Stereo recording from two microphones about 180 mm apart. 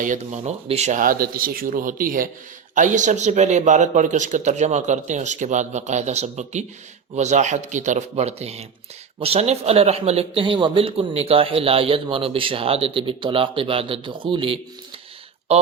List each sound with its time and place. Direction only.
0.0 s speech: 45° right (ahead or behind)